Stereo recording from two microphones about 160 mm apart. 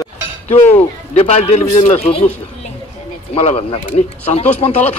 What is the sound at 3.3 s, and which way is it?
Speech, 40° left (ahead or behind).